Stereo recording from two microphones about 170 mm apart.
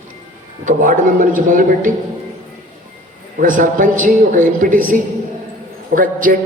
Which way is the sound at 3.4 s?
50° right (ahead or behind).